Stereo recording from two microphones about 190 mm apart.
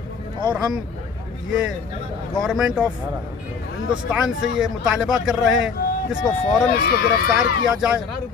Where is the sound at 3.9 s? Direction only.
5° right (ahead or behind).